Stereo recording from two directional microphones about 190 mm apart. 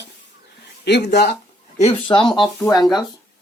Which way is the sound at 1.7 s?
30° left (ahead or behind).